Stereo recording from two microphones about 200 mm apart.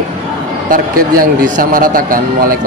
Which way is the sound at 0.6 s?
45° right (ahead or behind).